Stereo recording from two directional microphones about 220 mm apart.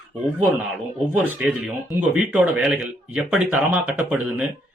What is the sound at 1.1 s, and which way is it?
Speech, 5° right (ahead or behind).